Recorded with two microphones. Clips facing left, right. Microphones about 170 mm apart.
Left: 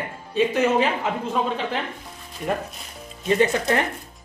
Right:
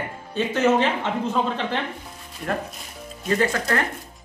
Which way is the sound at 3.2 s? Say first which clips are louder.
Left 3 dB; 20° left (ahead or behind).